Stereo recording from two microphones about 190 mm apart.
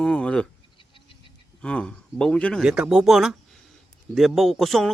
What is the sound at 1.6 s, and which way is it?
Speech, 5° left (ahead or behind).